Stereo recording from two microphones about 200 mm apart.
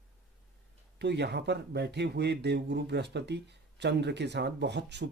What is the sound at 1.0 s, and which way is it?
Speech, 55° right (ahead or behind).